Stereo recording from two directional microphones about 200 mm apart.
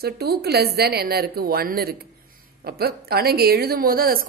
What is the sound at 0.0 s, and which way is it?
A woman's voice, 50° right (ahead or behind).